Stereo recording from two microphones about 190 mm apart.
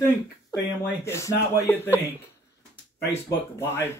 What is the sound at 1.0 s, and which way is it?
Speech, 15° left (ahead or behind).